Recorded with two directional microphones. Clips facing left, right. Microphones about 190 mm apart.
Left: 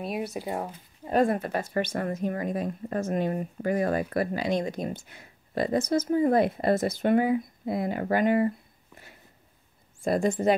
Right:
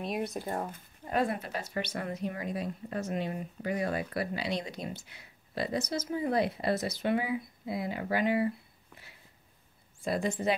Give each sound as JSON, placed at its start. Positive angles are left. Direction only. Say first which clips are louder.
{"t": 0.0, "sound": "speech", "louder": "left 2 dB", "side_deg": 5}
{"t": 1.1, "sound": "speech", "louder": "left 7 dB", "side_deg": 45}